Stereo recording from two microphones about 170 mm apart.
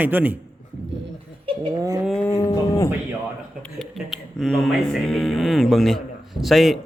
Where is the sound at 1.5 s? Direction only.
25° right (ahead or behind).